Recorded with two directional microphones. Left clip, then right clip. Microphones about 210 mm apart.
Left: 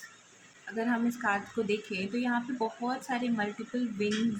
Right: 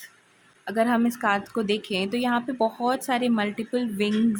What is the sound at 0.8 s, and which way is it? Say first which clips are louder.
Speech: right 8 dB; 50° right (ahead or behind).